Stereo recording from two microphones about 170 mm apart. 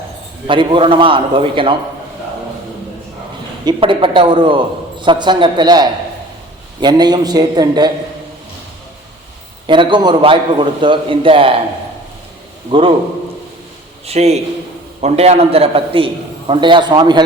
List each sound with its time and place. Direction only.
0.4 s a man's voice: 30° right (ahead or behind)
3.7 s a man's voice: 30° right (ahead or behind)
9.6 s a man's voice: 30° right (ahead or behind)
12.7 s a man's voice: 30° right (ahead or behind)
14.1 s a man's voice: 40° right (ahead or behind)